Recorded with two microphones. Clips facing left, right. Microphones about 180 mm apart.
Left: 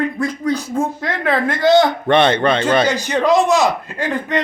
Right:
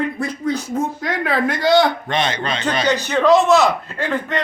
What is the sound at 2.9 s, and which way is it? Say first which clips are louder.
A man's voice: right 1 dB; 10° left (ahead or behind).